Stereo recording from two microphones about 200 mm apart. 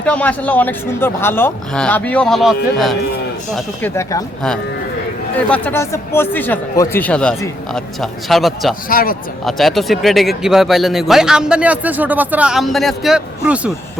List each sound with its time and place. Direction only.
0.0 s speech: 5° left (ahead or behind)
3.5 s speech: 10° left (ahead or behind)
5.5 s speech: 10° left (ahead or behind)
8.9 s speech: 45° left (ahead or behind)
9.4 s a man's voice: centre (ahead or behind)